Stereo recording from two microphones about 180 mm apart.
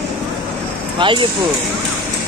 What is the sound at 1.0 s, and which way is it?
Speech, 30° right (ahead or behind).